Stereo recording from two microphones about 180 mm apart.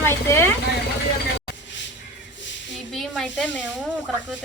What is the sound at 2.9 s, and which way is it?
Speech, centre (ahead or behind).